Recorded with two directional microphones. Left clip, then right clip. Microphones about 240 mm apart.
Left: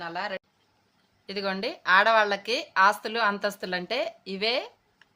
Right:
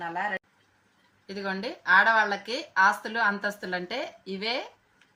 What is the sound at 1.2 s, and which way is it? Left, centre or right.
Speech, left.